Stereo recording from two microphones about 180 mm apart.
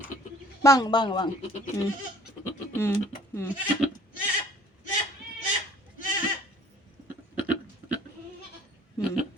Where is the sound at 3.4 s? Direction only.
15° left (ahead or behind).